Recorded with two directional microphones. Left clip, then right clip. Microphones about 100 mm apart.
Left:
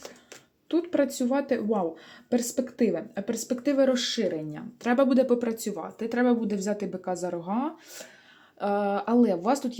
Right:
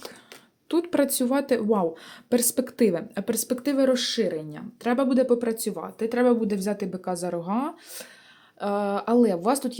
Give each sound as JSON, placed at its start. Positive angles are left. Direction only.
{"t": 0.7, "sound": "speech", "side_deg": -50}
{"t": 8.5, "sound": "speech", "side_deg": -10}